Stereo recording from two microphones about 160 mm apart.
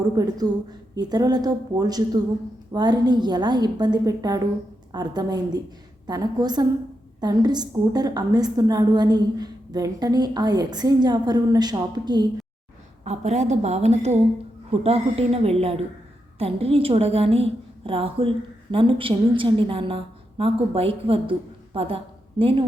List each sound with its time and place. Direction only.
0.2 s a woman's voice: 25° right (ahead or behind)
13.1 s a woman's voice: 45° right (ahead or behind)